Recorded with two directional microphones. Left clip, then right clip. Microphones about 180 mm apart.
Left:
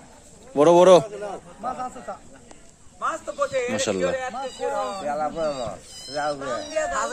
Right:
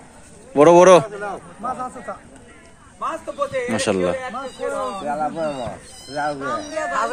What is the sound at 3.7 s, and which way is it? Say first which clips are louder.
A man's voice: right 3 dB; 5° left (ahead or behind).